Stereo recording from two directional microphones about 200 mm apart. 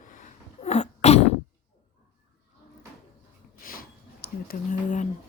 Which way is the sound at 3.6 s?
45° left (ahead or behind).